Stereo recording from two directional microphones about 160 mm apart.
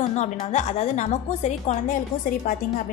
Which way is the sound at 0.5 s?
45° left (ahead or behind).